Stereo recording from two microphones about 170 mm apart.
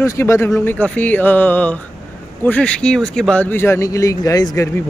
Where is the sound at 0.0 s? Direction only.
15° left (ahead or behind).